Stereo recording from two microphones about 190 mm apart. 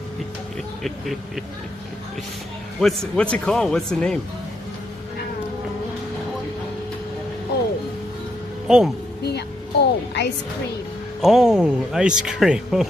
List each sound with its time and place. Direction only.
0.8 s speech: centre (ahead or behind)
2.8 s speech: centre (ahead or behind)
8.6 s speech: 5° right (ahead or behind)
9.2 s speech: 60° left (ahead or behind)
11.1 s speech: centre (ahead or behind)